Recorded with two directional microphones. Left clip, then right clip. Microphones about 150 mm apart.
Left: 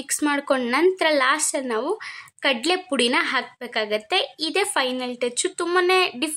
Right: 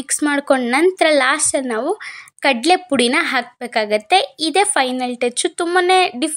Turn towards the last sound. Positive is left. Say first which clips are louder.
# right 5 dB
turn(degrees=-25)  # may be behind; listen again after turning